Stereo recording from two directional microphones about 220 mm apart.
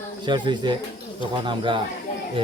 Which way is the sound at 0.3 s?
20° right (ahead or behind).